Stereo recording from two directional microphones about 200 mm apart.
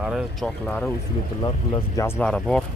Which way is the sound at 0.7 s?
10° left (ahead or behind).